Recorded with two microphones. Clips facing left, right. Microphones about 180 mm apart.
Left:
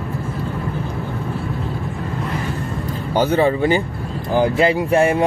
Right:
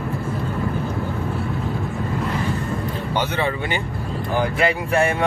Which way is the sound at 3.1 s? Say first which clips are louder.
Left 8 dB; 40° left (ahead or behind).